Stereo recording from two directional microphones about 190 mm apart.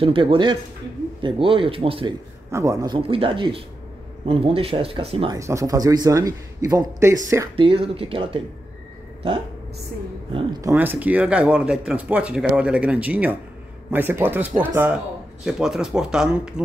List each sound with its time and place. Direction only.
0.0 s speech: 25° right (ahead or behind)
2.5 s speech: 15° right (ahead or behind)
5.4 s speech: 15° right (ahead or behind)
7.5 s speech: 30° right (ahead or behind)
10.3 s speech: 20° right (ahead or behind); by 16.6 s 5° right (ahead or behind)